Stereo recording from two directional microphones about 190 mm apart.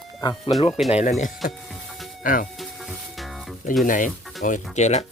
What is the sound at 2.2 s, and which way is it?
Speech, 45° left (ahead or behind).